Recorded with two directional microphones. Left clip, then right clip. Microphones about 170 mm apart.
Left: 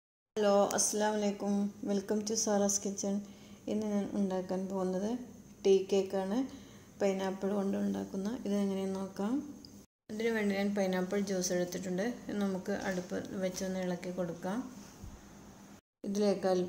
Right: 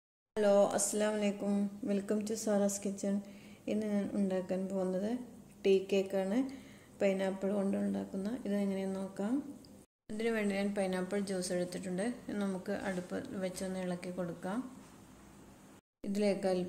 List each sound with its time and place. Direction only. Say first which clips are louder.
0.3 s speech: even; 5° right (ahead or behind)
16.0 s a woman's voice: left 2 dB; 45° right (ahead or behind)